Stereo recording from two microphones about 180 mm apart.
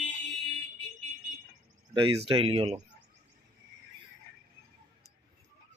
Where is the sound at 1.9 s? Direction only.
25° right (ahead or behind).